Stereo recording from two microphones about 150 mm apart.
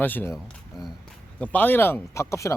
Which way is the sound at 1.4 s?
10° left (ahead or behind).